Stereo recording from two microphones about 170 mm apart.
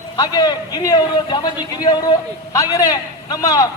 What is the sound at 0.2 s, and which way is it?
Speech, 25° left (ahead or behind).